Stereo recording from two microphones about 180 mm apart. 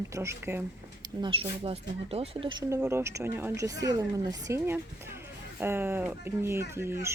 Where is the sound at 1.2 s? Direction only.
30° right (ahead or behind).